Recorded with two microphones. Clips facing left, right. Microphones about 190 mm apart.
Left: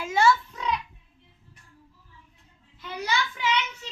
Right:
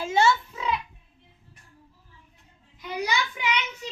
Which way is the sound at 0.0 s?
25° right (ahead or behind).